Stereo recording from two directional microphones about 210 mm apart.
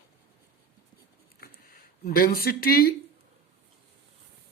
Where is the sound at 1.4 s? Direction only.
45° left (ahead or behind).